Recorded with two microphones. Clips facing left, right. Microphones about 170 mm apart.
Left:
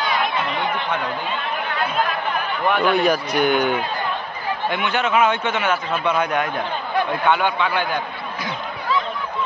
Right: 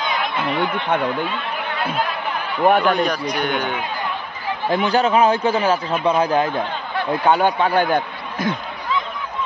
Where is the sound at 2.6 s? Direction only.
45° right (ahead or behind).